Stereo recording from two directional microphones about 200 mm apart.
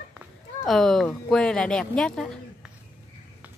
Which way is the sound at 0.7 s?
Centre (ahead or behind).